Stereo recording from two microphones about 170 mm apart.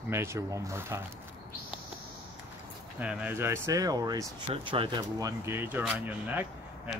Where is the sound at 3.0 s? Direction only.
5° right (ahead or behind).